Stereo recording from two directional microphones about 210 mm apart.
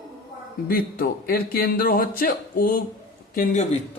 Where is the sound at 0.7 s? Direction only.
45° left (ahead or behind).